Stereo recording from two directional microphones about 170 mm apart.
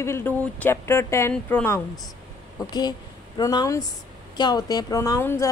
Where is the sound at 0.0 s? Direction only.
15° left (ahead or behind).